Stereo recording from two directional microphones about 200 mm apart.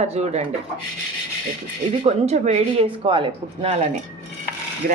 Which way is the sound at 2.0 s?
30° right (ahead or behind).